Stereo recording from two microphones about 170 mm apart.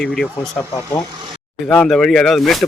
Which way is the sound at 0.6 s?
20° left (ahead or behind).